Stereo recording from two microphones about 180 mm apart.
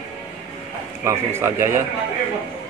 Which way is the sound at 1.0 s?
15° right (ahead or behind).